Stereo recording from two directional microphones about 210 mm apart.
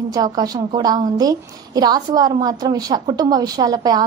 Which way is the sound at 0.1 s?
20° right (ahead or behind).